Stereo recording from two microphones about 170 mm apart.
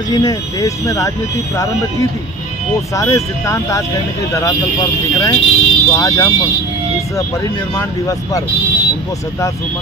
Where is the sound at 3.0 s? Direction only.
20° left (ahead or behind).